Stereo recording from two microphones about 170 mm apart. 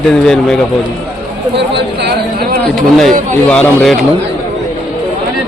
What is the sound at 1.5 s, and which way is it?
A man's voice, 80° right.